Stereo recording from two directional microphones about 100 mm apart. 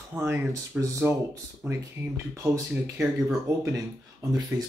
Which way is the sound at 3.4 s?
35° right (ahead or behind).